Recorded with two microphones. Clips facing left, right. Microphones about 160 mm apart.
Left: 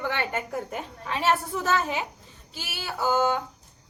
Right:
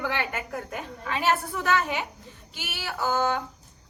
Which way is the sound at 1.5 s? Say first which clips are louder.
Even; 25° left (ahead or behind).